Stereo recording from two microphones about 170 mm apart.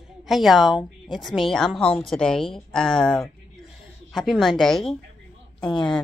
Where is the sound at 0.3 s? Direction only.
Centre (ahead or behind).